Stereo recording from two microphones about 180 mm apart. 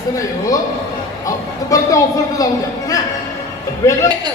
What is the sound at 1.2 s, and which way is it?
Speech, 20° left (ahead or behind).